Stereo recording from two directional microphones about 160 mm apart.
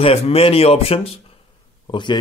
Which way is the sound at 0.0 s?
40° left (ahead or behind).